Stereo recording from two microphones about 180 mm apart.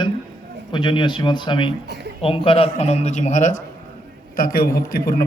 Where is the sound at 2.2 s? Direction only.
30° left (ahead or behind).